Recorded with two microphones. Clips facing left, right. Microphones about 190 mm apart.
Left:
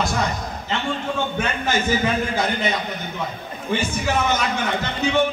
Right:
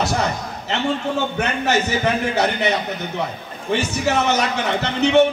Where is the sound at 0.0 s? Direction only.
70° right (ahead or behind).